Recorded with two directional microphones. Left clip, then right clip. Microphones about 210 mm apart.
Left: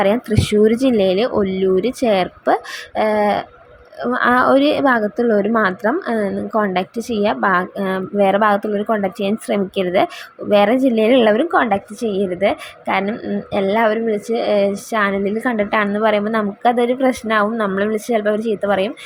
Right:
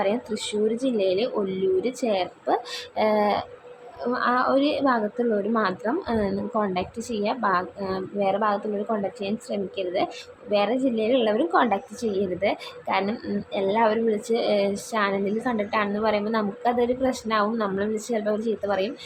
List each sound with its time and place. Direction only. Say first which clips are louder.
0.0 s a woman's voice: left 9 dB; 25° left (ahead or behind)